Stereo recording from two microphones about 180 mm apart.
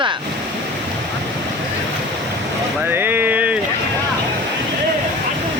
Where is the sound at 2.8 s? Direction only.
10° right (ahead or behind).